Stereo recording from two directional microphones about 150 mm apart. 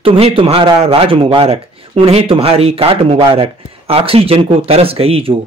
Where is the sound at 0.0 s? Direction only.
40° right (ahead or behind).